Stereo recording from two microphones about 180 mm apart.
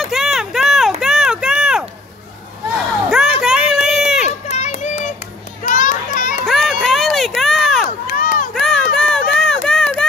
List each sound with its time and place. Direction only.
0.0 s run: centre (ahead or behind)
3.1 s a sound: 5° right (ahead or behind)
3.8 s run: 5° right (ahead or behind)
4.3 s children playing: 40° left (ahead or behind)
6.4 s run: centre (ahead or behind)
8.1 s run: 50° left (ahead or behind)
8.5 s run: 5° left (ahead or behind)